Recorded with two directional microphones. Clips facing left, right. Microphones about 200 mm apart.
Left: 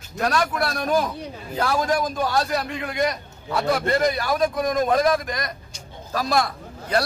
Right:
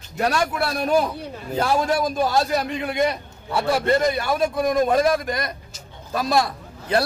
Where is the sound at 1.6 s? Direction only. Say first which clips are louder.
Right 1 dB; 25° right (ahead or behind).